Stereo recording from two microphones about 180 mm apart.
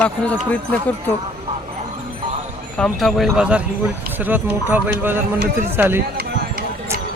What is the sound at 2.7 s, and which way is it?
Speech, 5° left (ahead or behind).